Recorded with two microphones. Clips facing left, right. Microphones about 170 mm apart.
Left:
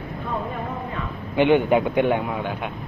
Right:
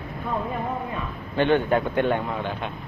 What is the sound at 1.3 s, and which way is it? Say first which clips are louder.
A man's voice: left 3 dB; 15° left (ahead or behind).